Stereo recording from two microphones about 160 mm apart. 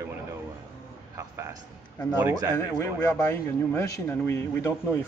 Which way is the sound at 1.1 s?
20° right (ahead or behind).